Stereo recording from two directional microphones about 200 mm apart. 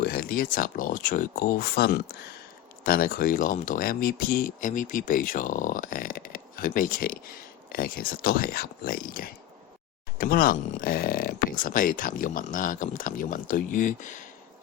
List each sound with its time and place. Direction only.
0.0 s speech: 45° left (ahead or behind)